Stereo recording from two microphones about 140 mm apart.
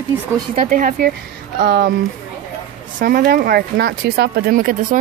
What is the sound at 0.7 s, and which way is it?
Speech, 75° right (ahead or behind).